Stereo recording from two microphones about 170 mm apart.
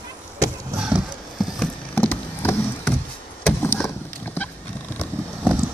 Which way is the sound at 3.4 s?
10° left (ahead or behind).